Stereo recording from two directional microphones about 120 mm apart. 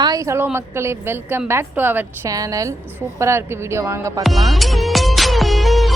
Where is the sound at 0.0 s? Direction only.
30° right (ahead or behind).